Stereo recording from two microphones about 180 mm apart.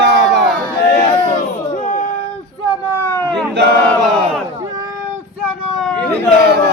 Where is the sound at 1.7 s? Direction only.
45° left (ahead or behind).